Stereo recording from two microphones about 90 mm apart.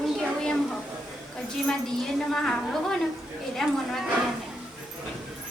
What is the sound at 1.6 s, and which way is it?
Speech, 5° left (ahead or behind).